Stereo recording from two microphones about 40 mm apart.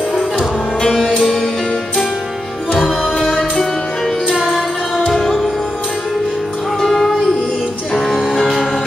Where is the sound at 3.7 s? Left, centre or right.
Left.